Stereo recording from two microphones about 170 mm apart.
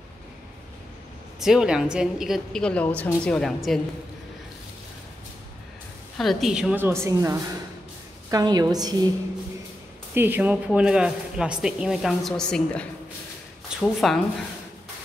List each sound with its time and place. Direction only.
1.4 s speech: 5° right (ahead or behind)
6.1 s a woman's voice: centre (ahead or behind); by 9.1 s 25° right (ahead or behind)
10.1 s speech: 10° right (ahead or behind)